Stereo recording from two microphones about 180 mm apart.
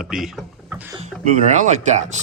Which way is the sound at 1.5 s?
40° right (ahead or behind).